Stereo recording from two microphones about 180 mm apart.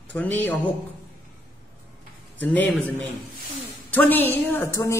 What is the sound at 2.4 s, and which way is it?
Speech, 10° left (ahead or behind).